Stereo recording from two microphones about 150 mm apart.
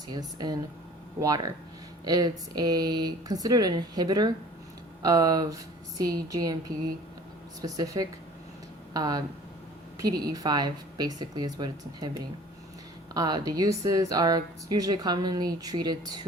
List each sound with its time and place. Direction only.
0.1 s speech: 30° right (ahead or behind)
2.0 s speech: 25° right (ahead or behind)